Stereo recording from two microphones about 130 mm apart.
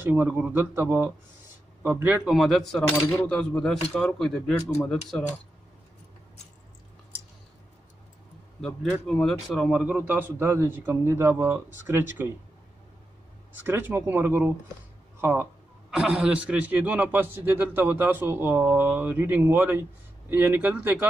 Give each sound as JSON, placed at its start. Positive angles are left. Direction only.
{"t": 0.0, "sound": "a man's voice", "side_deg": -15}
{"t": 2.2, "sound": "speech", "side_deg": 0}
{"t": 8.5, "sound": "a man's voice", "side_deg": 5}
{"t": 13.7, "sound": "a man's voice", "side_deg": -15}
{"t": 15.9, "sound": "a man's voice", "side_deg": -5}